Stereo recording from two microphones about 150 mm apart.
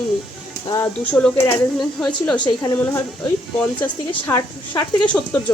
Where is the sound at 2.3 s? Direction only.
30° left (ahead or behind).